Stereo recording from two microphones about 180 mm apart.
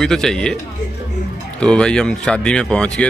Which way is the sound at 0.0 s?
Centre (ahead or behind).